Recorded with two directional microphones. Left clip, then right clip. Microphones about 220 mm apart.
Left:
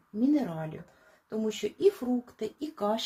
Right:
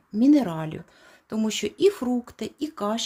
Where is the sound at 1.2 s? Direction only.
50° right (ahead or behind).